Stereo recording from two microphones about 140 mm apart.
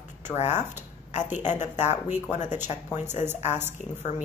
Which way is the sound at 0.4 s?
55° left (ahead or behind).